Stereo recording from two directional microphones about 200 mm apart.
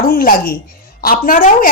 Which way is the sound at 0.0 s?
45° left (ahead or behind).